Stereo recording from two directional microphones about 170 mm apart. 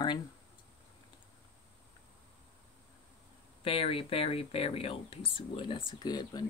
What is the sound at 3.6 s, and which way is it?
Speech, 35° left (ahead or behind).